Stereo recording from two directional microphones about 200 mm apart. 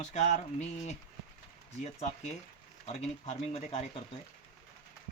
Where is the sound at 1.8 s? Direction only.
35° left (ahead or behind).